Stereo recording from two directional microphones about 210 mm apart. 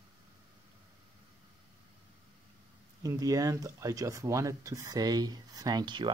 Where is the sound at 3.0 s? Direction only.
15° right (ahead or behind).